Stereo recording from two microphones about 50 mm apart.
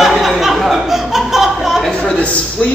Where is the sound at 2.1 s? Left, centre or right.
Left.